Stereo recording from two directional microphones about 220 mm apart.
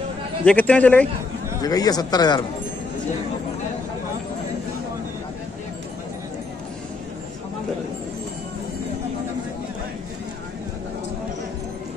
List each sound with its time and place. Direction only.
0.5 s speech: 5° left (ahead or behind)
1.6 s speech: 15° left (ahead or behind)